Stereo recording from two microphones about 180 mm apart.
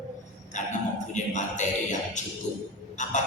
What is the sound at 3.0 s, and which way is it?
Music, 40° left (ahead or behind).